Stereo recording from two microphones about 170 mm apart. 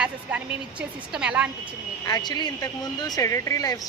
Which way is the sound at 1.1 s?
5° right (ahead or behind).